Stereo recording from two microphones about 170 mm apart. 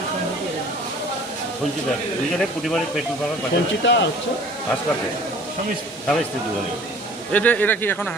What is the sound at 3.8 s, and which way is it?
Speech, 90° left.